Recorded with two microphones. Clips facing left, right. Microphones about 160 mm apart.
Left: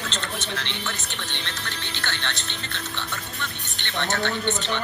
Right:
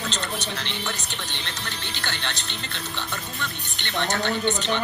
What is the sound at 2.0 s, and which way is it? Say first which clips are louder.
Speech: left 1 dB; 15° right (ahead or behind).